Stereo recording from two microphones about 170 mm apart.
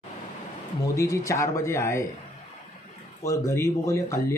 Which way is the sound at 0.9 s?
20° left (ahead or behind).